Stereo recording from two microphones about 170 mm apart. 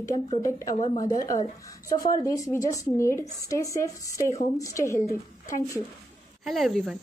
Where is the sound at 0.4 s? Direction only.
20° left (ahead or behind).